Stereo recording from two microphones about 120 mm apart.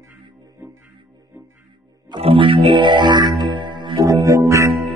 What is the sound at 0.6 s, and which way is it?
Music, 15° right (ahead or behind).